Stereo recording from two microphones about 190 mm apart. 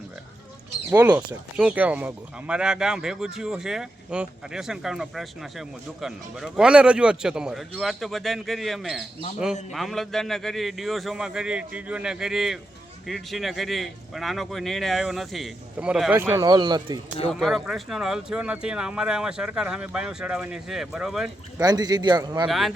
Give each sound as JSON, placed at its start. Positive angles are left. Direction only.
{"t": 0.9, "sound": "speech", "side_deg": -15}
{"t": 17.2, "sound": "speech", "side_deg": 0}
{"t": 21.6, "sound": "a man's voice", "side_deg": -20}
{"t": 22.4, "sound": "speech", "side_deg": 0}